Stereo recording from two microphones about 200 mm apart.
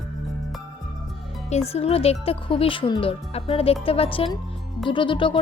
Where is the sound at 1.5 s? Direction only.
30° left (ahead or behind).